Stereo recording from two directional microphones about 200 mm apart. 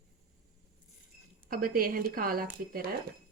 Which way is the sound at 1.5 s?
45° right (ahead or behind).